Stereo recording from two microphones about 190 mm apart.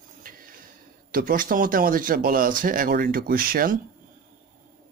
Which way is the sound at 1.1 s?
45° right (ahead or behind).